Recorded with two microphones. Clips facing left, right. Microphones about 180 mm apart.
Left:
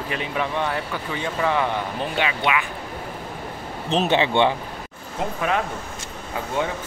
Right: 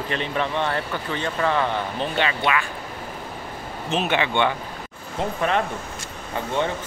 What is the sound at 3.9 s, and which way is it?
Speech, 30° left (ahead or behind).